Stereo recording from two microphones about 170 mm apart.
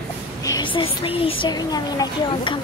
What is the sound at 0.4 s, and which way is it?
Speech, 25° left (ahead or behind).